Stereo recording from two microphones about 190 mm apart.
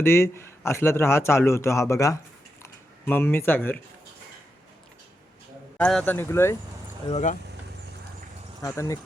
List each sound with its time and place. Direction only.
0.0 s a man's voice: 15° left (ahead or behind)
5.7 s a man's voice: 5° left (ahead or behind)
7.1 s speech: 40° left (ahead or behind)
8.6 s a man's voice: 15° left (ahead or behind)